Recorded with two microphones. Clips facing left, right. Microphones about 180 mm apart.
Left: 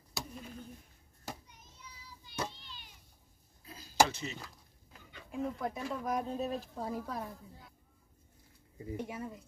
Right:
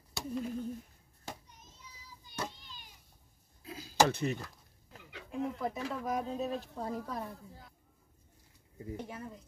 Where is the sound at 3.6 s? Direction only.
80° right.